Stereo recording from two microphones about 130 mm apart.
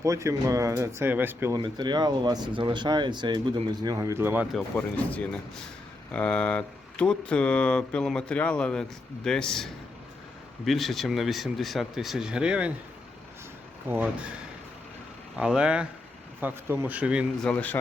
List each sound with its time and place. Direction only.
0.0 s speech: 25° right (ahead or behind)
1.5 s speech: 35° right (ahead or behind); by 4.4 s 15° right (ahead or behind)
4.8 s speech: 10° left (ahead or behind)
10.7 s speech: centre (ahead or behind)
13.8 s speech: 15° right (ahead or behind)
15.4 s speech: 5° right (ahead or behind)
17.4 s speech: 10° left (ahead or behind)